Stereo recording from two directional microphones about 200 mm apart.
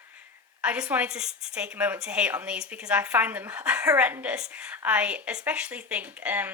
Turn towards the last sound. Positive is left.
turn(degrees=-10)  # may be behind; listen again after turning